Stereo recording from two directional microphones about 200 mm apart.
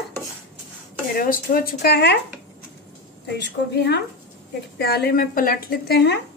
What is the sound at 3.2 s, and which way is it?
A woman's voice, 55° left (ahead or behind).